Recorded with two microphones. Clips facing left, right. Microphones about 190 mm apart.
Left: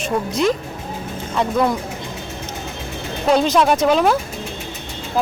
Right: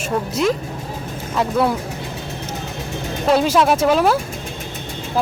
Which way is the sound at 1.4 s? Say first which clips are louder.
Even; 5° right (ahead or behind).